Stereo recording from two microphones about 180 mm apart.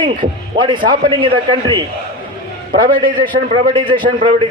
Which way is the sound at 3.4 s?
35° right (ahead or behind).